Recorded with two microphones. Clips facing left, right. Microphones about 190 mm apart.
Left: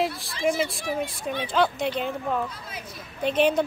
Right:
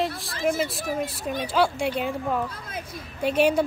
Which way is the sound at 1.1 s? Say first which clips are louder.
Right 1 dB; 5° right (ahead or behind).